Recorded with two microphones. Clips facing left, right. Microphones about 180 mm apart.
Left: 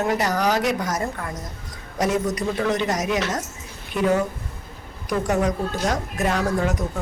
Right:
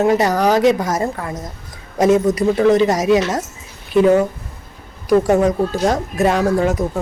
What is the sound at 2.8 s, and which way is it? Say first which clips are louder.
Speech: right 9 dB; 25° right (ahead or behind).